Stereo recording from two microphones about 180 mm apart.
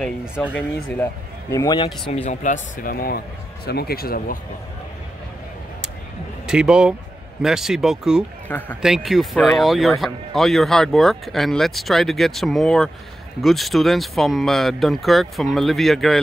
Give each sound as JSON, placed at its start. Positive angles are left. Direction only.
{"t": 0.0, "sound": "speech", "side_deg": -5}
{"t": 1.5, "sound": "a man's voice", "side_deg": 20}
{"t": 2.2, "sound": "a man's voice", "side_deg": 45}
{"t": 6.4, "sound": "speech", "side_deg": -5}
{"t": 8.5, "sound": "a man's voice", "side_deg": 10}
{"t": 8.8, "sound": "speech", "side_deg": 0}